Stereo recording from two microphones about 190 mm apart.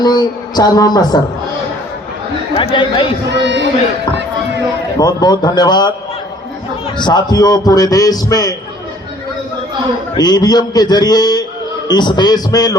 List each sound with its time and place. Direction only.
0.0 s a man's voice: 20° left (ahead or behind)
2.6 s a man's voice: 30° left (ahead or behind)
3.2 s a man's voice: 65° right (ahead or behind)
4.9 s a man's voice: 20° left (ahead or behind)
6.9 s a man's voice: 25° left (ahead or behind)
10.2 s a man's voice: 20° left (ahead or behind)